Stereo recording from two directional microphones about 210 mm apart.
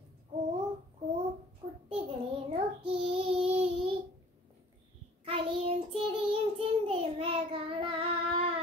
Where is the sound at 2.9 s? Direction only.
25° right (ahead or behind).